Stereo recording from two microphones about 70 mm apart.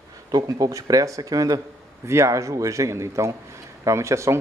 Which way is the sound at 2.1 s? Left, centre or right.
Right.